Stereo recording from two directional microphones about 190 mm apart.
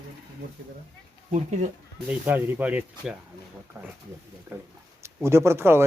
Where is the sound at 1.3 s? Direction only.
40° right (ahead or behind).